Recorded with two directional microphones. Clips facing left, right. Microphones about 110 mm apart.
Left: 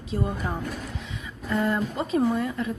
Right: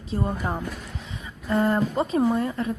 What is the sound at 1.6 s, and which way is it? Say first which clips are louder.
Speech: right 4 dB; 35° right (ahead or behind).